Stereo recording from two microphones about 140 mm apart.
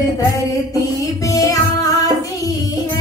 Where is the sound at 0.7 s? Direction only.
25° left (ahead or behind).